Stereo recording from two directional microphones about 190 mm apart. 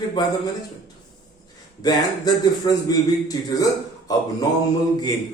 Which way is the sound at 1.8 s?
20° left (ahead or behind).